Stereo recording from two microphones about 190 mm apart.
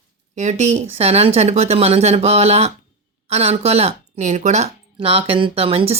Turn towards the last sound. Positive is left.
turn(degrees=-30)  # may be behind; listen again after turning